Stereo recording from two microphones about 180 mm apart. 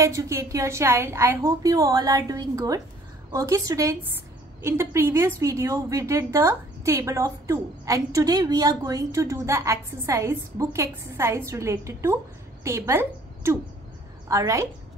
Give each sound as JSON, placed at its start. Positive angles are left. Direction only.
{"t": 0.0, "sound": "a woman's voice", "side_deg": -15}